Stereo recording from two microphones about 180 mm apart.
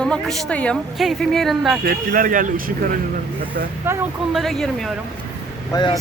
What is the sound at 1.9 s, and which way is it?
Speech, 50° right (ahead or behind).